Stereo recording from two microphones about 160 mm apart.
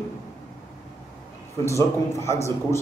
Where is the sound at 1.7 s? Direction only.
20° left (ahead or behind).